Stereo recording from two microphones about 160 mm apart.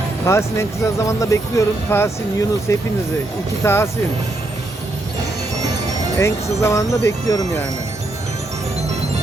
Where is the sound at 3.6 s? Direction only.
15° left (ahead or behind).